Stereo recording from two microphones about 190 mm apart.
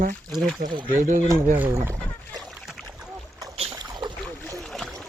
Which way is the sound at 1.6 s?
10° right (ahead or behind).